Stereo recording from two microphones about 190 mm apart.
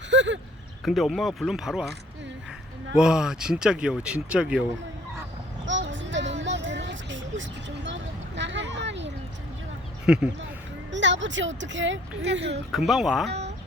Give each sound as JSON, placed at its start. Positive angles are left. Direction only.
{"t": 0.1, "sound": "a sound", "side_deg": -75}
{"t": 0.9, "sound": "speech", "side_deg": 0}
{"t": 2.9, "sound": "speech", "side_deg": -5}
{"t": 5.6, "sound": "a sound", "side_deg": -75}
{"t": 10.1, "sound": "speech", "side_deg": -5}
{"t": 10.9, "sound": "speech", "side_deg": -75}
{"t": 12.7, "sound": "speech", "side_deg": 0}